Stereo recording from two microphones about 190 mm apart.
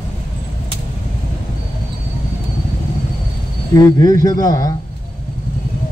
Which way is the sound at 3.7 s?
20° left (ahead or behind).